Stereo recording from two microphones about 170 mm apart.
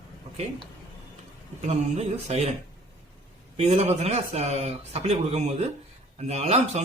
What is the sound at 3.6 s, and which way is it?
Speech, 40° right (ahead or behind).